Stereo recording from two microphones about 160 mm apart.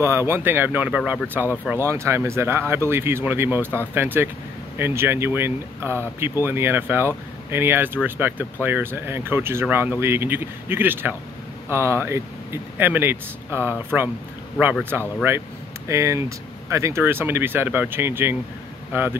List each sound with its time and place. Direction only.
0.0 s speech: 15° right (ahead or behind)
1.4 s speech: 15° left (ahead or behind)
1.7 s speech: 15° right (ahead or behind)
14.9 s speech: 10° right (ahead or behind)